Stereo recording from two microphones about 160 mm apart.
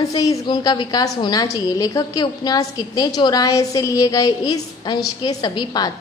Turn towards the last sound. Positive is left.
turn(degrees=25)  # may be behind; listen again after turning